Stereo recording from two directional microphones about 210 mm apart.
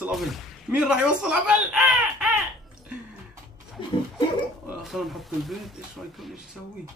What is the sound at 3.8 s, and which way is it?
Pig, 25° left (ahead or behind).